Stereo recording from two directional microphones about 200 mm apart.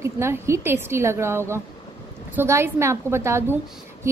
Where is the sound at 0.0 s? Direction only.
15° right (ahead or behind).